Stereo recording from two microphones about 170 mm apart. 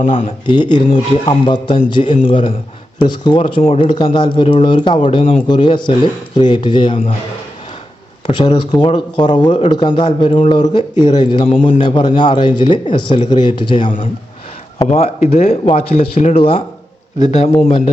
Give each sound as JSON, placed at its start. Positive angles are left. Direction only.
{"t": 0.0, "sound": "speech", "side_deg": 45}
{"t": 0.4, "sound": "a man's voice", "side_deg": 25}
{"t": 8.3, "sound": "a man's voice", "side_deg": 30}
{"t": 14.8, "sound": "speech", "side_deg": 40}